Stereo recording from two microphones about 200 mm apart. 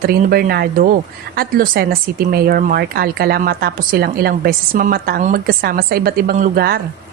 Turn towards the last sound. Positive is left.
turn(degrees=-50)  # may be behind; listen again after turning